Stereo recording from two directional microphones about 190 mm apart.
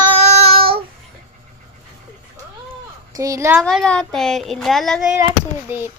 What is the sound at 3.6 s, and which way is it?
Speech, 5° left (ahead or behind).